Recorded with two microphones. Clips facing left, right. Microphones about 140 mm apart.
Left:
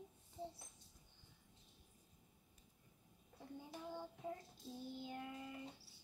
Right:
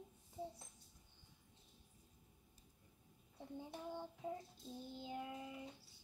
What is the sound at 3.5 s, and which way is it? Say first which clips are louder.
Child singing: right 2 dB; 15° right (ahead or behind).